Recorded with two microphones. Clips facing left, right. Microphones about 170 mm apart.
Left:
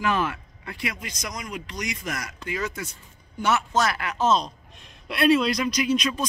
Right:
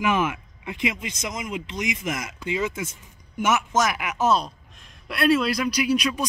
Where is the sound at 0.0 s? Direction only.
15° right (ahead or behind).